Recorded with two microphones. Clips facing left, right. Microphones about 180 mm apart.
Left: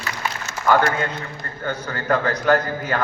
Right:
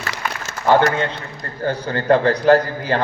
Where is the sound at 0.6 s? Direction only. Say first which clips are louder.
Right 3 dB; 30° right (ahead or behind).